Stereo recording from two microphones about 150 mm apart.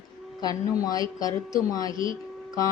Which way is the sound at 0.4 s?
25° left (ahead or behind).